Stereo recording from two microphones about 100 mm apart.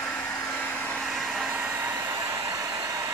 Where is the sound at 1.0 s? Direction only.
5° right (ahead or behind).